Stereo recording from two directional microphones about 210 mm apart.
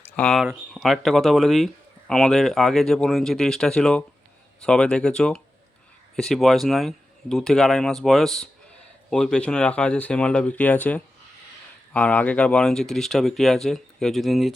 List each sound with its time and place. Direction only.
0.2 s speech: centre (ahead or behind)